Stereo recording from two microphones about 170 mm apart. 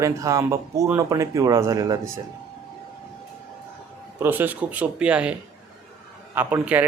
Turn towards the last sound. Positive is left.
turn(degrees=-10)  # may be behind; listen again after turning